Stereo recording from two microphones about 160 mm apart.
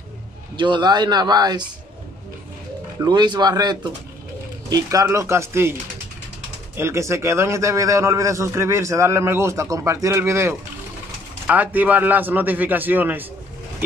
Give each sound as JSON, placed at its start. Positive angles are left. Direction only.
{"t": 0.6, "sound": "speech", "side_deg": -30}
{"t": 3.0, "sound": "a man's voice", "side_deg": -25}
{"t": 6.8, "sound": "a man's voice", "side_deg": -15}